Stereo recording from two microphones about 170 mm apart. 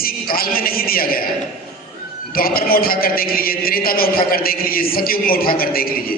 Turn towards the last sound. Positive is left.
turn(degrees=60)  # may be behind; listen again after turning